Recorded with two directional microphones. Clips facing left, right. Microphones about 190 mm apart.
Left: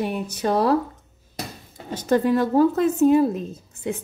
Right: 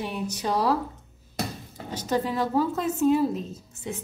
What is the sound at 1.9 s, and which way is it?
Speech, 55° left (ahead or behind).